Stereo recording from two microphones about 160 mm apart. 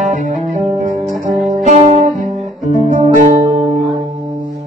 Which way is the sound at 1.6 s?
45° right (ahead or behind).